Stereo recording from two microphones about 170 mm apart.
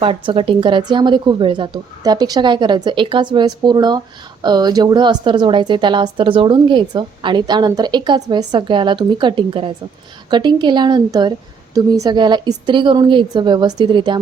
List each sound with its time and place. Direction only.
0.0 s a woman's voice: 30° right (ahead or behind)